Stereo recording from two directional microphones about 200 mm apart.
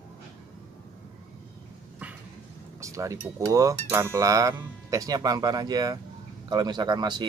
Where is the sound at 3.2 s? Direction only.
15° right (ahead or behind).